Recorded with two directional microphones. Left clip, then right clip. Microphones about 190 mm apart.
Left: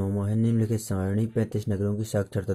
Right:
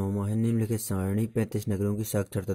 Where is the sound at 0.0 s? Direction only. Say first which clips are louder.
Left 2 dB; 25° right (ahead or behind).